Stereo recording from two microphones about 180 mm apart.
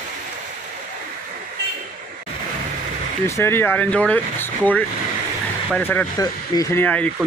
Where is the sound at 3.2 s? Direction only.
15° left (ahead or behind).